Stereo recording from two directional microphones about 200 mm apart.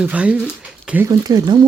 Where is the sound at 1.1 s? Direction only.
20° right (ahead or behind).